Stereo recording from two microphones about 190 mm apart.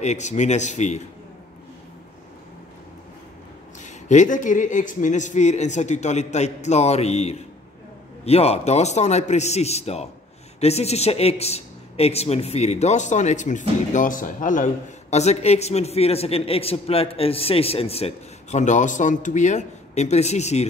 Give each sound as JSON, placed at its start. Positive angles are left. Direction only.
{"t": 0.0, "sound": "speech", "side_deg": 35}
{"t": 3.8, "sound": "speech", "side_deg": 40}